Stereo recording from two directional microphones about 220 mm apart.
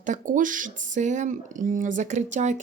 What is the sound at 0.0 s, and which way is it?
Speech, 35° right (ahead or behind).